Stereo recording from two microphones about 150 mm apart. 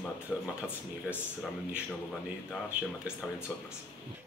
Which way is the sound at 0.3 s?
Centre (ahead or behind).